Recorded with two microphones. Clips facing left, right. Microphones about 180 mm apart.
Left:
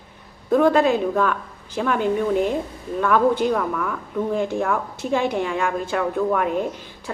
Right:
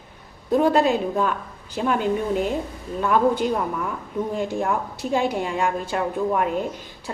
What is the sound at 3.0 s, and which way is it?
Speech, 15° right (ahead or behind).